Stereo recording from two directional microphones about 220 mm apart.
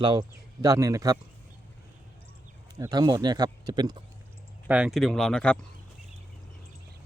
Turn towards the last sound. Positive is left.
turn(degrees=5)  # may be behind; listen again after turning